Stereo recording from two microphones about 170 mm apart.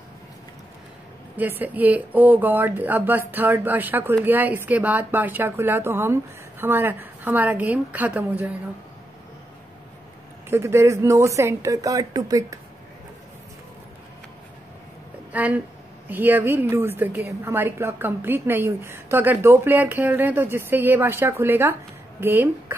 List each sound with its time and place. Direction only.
1.3 s a woman's voice: 10° right (ahead or behind)
10.5 s a woman's voice: 15° right (ahead or behind)
15.3 s a woman's voice: 10° right (ahead or behind)